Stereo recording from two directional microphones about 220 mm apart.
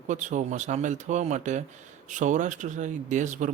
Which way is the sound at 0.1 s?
35° right (ahead or behind).